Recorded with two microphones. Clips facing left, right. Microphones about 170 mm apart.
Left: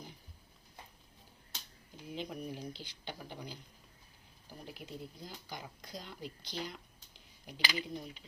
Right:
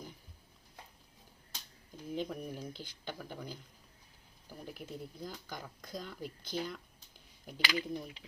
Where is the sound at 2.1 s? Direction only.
45° right (ahead or behind).